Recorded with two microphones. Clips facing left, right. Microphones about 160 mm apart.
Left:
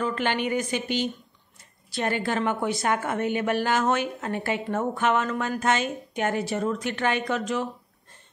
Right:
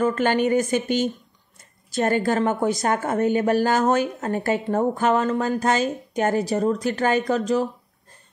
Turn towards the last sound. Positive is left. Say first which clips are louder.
# right 6 dB
turn(degrees=-35)  # may be behind; listen again after turning